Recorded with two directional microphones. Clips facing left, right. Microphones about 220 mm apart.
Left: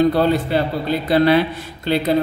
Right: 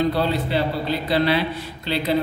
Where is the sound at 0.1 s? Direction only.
50° left (ahead or behind).